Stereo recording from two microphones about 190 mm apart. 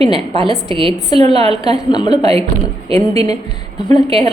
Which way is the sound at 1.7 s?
20° left (ahead or behind).